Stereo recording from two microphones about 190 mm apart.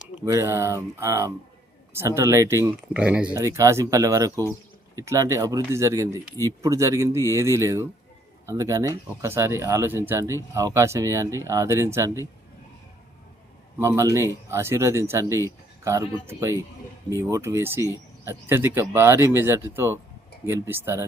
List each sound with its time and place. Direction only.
0.3 s speech: 15° right (ahead or behind)
13.7 s speech: 15° right (ahead or behind)